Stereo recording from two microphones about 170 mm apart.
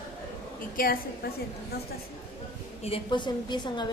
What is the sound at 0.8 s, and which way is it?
Speech, 60° left (ahead or behind).